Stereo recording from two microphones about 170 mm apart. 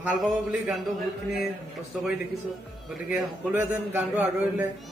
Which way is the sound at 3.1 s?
10° right (ahead or behind).